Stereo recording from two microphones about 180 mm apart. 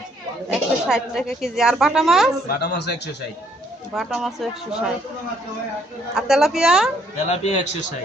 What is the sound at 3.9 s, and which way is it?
Speech, centre (ahead or behind).